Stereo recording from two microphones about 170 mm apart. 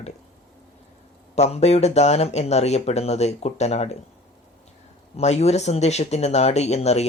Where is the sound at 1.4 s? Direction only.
40° left (ahead or behind).